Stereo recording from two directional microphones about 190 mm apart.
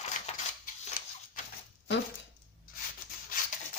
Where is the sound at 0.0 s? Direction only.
40° left (ahead or behind).